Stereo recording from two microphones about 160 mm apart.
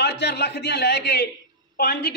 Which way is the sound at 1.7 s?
80° left.